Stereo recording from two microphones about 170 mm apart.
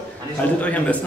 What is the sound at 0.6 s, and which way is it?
Speech, 10° left (ahead or behind).